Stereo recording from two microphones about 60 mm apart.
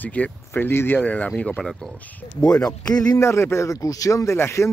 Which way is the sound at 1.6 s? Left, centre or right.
Centre.